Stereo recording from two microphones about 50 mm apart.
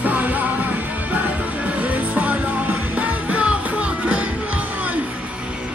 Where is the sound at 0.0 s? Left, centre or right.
Right.